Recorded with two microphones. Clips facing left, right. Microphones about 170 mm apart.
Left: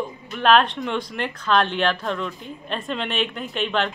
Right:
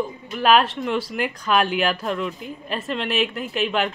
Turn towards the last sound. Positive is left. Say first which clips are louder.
# right 1 dB
turn(degrees=-5)  # may be behind; listen again after turning